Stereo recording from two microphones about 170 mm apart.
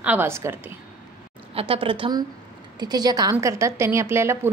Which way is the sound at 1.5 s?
30° right (ahead or behind).